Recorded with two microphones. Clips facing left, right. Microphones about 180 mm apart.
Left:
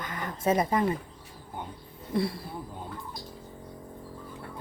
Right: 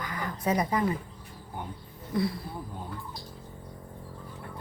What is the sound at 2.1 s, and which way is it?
Speech, 25° left (ahead or behind).